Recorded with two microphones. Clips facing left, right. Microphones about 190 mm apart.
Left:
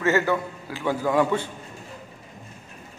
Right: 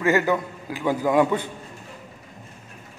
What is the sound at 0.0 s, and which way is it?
A man's voice, 15° right (ahead or behind).